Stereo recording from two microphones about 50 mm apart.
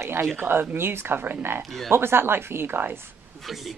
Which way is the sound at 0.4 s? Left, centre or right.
Right.